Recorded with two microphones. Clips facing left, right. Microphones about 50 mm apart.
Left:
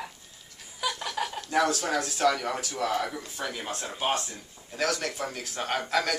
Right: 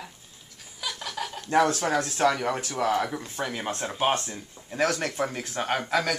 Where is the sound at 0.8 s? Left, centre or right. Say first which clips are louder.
Left 3 dB; centre.